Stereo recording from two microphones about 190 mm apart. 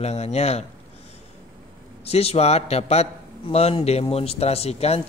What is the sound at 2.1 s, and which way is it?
A man's voice, 30° left (ahead or behind).